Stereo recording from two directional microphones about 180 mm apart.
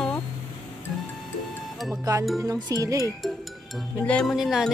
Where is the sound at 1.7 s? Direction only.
Centre (ahead or behind).